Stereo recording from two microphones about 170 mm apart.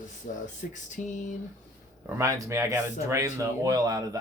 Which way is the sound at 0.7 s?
45° left (ahead or behind).